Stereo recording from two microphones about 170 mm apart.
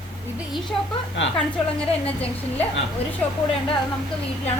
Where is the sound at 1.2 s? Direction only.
90° left.